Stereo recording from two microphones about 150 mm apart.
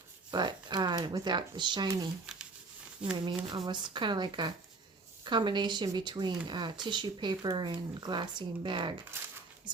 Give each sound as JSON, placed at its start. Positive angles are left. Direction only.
{"t": 0.3, "sound": "speech", "side_deg": -30}
{"t": 2.2, "sound": "a sound", "side_deg": -5}
{"t": 3.2, "sound": "speech", "side_deg": -30}